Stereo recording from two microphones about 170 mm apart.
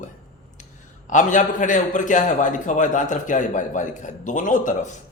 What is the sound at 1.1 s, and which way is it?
A man's voice, 50° left (ahead or behind).